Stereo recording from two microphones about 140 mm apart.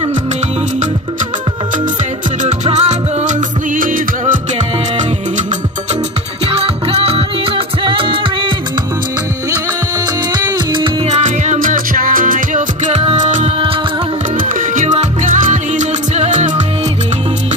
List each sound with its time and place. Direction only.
2.4 s music: 55° right (ahead or behind); by 4.4 s 75° right (ahead or behind)
6.4 s music: 45° right (ahead or behind)
10.3 s music: 35° right (ahead or behind)
11.2 s music: 60° right (ahead or behind)
14.4 s music: 70° right (ahead or behind)